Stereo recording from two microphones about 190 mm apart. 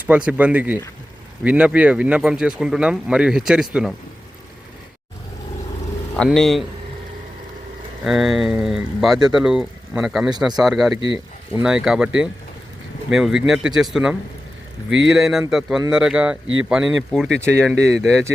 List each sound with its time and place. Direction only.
0.0 s speech: 5° right (ahead or behind)
6.1 s speech: centre (ahead or behind)
8.0 s speech: centre (ahead or behind)
11.0 s speech: 25° left (ahead or behind)
11.6 s speech: 5° right (ahead or behind)
14.8 s speech: 75° right (ahead or behind)
15.1 s speech: centre (ahead or behind)